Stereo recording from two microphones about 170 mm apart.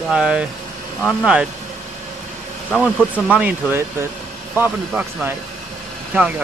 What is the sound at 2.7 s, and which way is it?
Speech, 5° left (ahead or behind).